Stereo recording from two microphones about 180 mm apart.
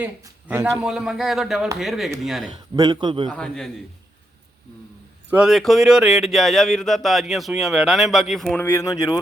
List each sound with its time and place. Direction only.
0.0 s speech: 10° right (ahead or behind)
2.7 s a man's voice: 25° right (ahead or behind)
3.3 s speech: 5° left (ahead or behind)
5.3 s speech: 5° right (ahead or behind)
8.5 s speech: 15° left (ahead or behind)